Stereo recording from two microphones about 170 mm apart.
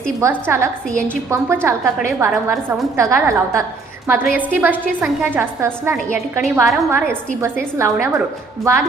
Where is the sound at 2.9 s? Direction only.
15° right (ahead or behind).